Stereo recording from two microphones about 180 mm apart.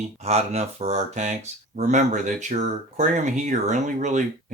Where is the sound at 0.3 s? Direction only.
35° right (ahead or behind).